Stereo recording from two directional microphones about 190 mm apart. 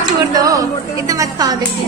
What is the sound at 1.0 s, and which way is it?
Speech, 20° right (ahead or behind).